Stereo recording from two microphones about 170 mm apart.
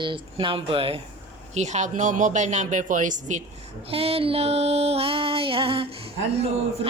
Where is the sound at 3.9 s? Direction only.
35° right (ahead or behind).